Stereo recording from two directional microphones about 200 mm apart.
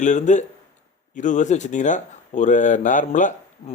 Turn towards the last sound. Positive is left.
turn(degrees=40)  # may be behind; listen again after turning